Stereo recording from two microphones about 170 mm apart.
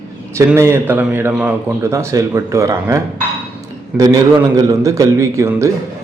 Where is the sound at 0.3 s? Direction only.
15° right (ahead or behind).